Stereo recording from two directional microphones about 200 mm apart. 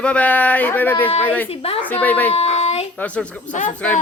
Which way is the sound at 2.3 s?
30° left (ahead or behind).